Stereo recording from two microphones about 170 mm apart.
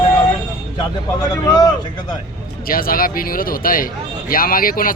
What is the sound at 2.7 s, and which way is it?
Speech, 60° left (ahead or behind).